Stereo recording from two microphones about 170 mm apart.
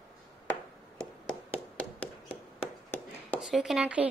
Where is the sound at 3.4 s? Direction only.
5° right (ahead or behind).